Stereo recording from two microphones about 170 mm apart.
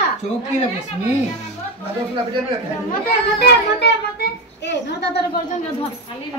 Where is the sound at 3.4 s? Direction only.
75° left (ahead or behind).